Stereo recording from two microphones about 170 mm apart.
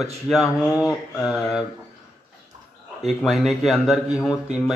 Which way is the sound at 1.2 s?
5° right (ahead or behind).